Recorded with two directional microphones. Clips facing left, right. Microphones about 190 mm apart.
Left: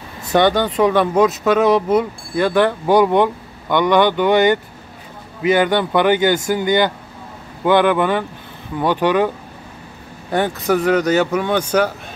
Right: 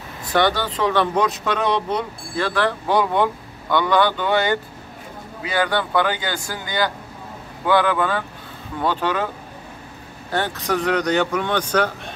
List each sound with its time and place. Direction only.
0.3 s speech: 20° left (ahead or behind)
2.3 s speech: 20° left (ahead or behind)
10.3 s speech: 15° left (ahead or behind)